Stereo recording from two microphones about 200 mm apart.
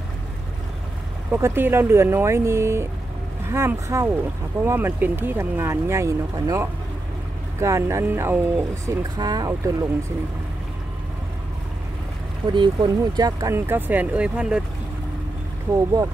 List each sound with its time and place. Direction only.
1.3 s speech: 10° right (ahead or behind)
12.5 s speech: 20° right (ahead or behind); by 14.6 s 5° right (ahead or behind)
15.7 s speech: 15° right (ahead or behind)